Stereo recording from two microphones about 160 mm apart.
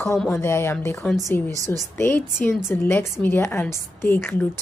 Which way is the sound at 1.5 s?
20° right (ahead or behind).